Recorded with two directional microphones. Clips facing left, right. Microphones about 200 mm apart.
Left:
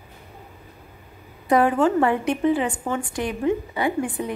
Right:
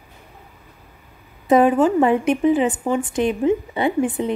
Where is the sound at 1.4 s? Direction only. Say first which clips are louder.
Right 4 dB; 20° right (ahead or behind).